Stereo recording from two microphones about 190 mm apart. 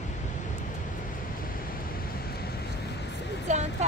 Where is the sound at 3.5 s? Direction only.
35° right (ahead or behind).